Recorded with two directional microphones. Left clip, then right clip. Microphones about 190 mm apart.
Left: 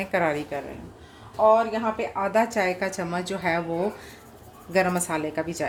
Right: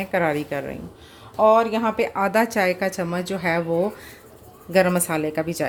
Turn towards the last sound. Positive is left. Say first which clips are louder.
# right 4 dB
turn(degrees=-25)  # may be behind; listen again after turning